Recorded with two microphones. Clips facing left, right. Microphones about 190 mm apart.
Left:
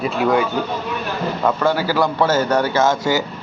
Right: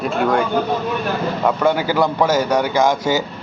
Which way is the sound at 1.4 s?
15° right (ahead or behind).